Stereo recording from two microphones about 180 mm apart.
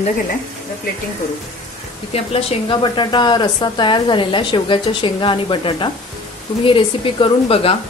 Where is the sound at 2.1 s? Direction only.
30° left (ahead or behind).